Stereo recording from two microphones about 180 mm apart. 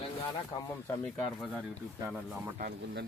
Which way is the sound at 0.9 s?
10° left (ahead or behind).